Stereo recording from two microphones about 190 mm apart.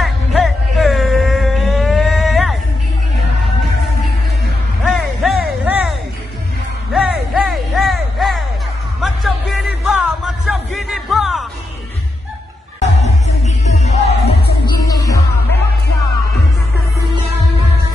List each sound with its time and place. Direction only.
0.0 s music: centre (ahead or behind)
4.9 s music: 5° right (ahead or behind)
13.7 s music: 35° left (ahead or behind)
14.9 s music: 20° left (ahead or behind)